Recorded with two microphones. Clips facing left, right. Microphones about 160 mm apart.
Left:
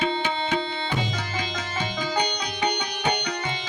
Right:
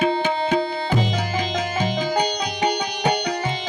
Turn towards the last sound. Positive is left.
turn(degrees=-40)  # may be behind; listen again after turning